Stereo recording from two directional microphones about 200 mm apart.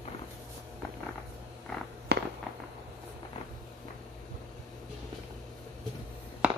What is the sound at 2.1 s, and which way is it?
Fireworks, 55° right (ahead or behind).